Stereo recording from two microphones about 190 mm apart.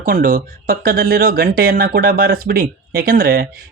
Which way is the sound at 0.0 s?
45° right (ahead or behind).